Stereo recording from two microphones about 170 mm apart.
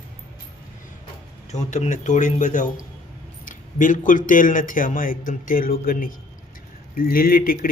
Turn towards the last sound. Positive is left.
turn(degrees=60)  # may be behind; listen again after turning